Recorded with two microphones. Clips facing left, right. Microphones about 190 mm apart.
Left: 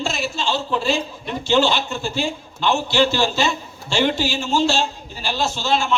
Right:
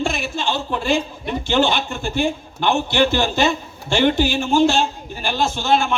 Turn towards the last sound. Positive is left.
turn(degrees=-55)  # may be behind; listen again after turning